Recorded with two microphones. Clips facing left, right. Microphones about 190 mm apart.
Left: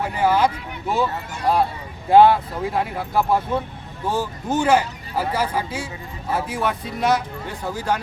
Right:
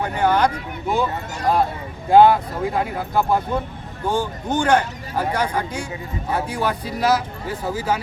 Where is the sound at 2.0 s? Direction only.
Centre (ahead or behind).